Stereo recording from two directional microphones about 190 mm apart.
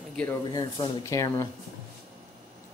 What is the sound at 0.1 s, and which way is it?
Speech, 5° left (ahead or behind).